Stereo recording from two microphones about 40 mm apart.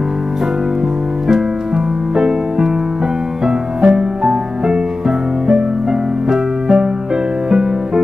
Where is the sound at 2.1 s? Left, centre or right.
Centre.